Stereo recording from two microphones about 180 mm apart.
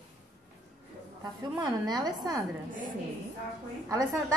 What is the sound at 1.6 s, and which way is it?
Speech, 20° right (ahead or behind).